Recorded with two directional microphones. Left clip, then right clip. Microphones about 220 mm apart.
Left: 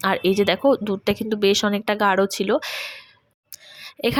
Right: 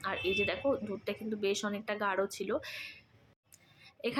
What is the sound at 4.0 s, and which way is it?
Speech, 45° left (ahead or behind).